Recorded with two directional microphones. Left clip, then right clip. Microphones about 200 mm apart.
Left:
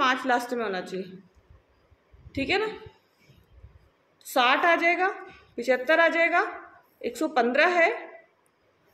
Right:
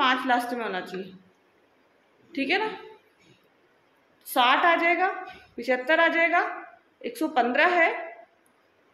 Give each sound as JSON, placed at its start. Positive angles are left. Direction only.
{"t": 0.0, "sound": "a woman's voice", "side_deg": 20}
{"t": 2.3, "sound": "a woman's voice", "side_deg": 20}
{"t": 4.2, "sound": "a woman's voice", "side_deg": 25}